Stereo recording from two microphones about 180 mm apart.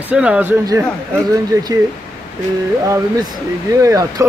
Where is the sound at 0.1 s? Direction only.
5° right (ahead or behind).